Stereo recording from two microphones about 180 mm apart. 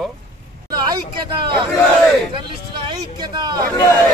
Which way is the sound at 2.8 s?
25° right (ahead or behind).